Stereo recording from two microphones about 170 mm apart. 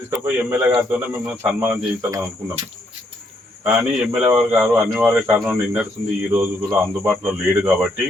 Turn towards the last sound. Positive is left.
turn(degrees=-10)  # may be behind; listen again after turning